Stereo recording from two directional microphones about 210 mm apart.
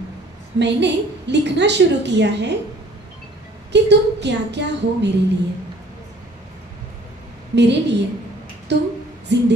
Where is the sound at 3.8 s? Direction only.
55° right (ahead or behind).